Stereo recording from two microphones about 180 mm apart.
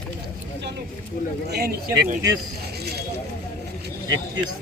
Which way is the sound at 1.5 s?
60° right (ahead or behind).